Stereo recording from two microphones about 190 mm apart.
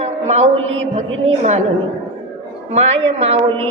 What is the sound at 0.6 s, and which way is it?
Speech, 90° right.